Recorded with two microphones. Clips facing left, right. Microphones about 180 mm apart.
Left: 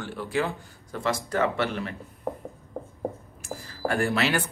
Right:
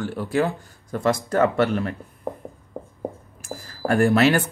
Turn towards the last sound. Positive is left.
turn(degrees=-45)  # may be behind; listen again after turning